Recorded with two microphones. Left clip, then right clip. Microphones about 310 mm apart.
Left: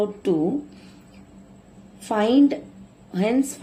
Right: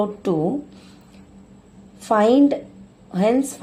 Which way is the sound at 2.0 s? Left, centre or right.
Centre.